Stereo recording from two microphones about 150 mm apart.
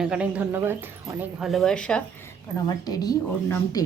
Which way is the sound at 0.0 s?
5° right (ahead or behind).